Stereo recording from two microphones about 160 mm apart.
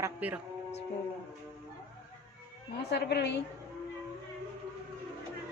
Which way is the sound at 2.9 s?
90° left.